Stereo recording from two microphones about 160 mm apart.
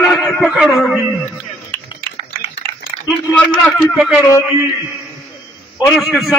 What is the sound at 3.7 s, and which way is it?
Speech, centre (ahead or behind).